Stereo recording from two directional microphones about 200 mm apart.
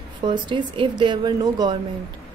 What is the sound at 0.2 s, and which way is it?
A woman's voice, 25° right (ahead or behind).